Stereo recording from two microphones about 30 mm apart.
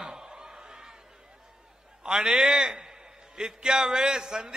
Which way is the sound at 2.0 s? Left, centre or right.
Right.